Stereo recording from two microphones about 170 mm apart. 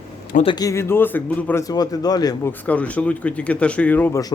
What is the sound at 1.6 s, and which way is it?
Speech, 20° left (ahead or behind).